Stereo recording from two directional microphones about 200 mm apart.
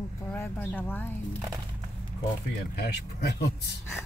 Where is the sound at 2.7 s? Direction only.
50° left (ahead or behind).